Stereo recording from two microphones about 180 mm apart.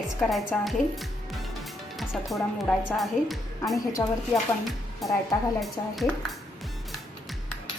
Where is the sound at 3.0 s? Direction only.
Centre (ahead or behind).